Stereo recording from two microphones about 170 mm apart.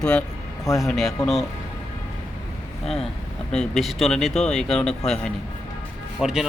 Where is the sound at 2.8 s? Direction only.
Centre (ahead or behind).